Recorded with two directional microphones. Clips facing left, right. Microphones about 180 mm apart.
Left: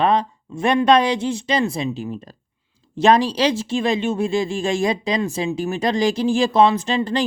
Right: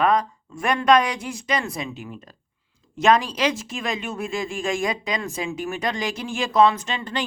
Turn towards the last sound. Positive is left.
turn(degrees=35)  # may be behind; listen again after turning